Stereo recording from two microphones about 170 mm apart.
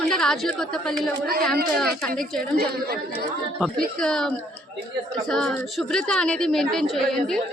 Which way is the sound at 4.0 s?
5° left (ahead or behind).